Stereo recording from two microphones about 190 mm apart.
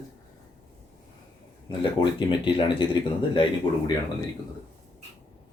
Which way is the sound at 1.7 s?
25° left (ahead or behind).